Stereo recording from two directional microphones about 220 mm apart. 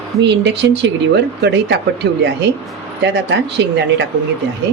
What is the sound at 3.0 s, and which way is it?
Speech, 50° right (ahead or behind).